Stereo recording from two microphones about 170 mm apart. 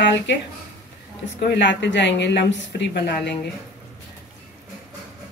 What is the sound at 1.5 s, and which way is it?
A woman's voice, 90° left.